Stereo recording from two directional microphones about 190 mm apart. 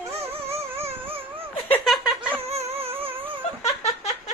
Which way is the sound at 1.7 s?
Centre (ahead or behind).